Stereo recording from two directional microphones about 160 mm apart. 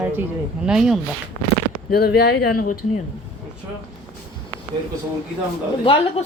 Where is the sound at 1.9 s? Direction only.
75° left (ahead or behind).